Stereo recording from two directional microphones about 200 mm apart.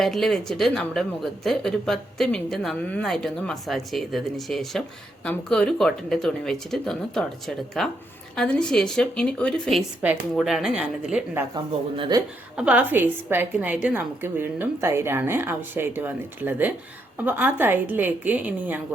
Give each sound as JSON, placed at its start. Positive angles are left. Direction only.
{"t": 0.0, "sound": "speech", "side_deg": 0}
{"t": 11.5, "sound": "speech", "side_deg": -20}
{"t": 12.5, "sound": "a woman's voice", "side_deg": -5}